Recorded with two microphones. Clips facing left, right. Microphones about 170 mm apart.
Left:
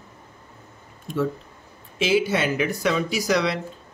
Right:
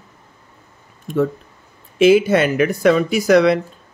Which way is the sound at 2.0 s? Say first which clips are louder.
Right 9 dB; 55° right (ahead or behind).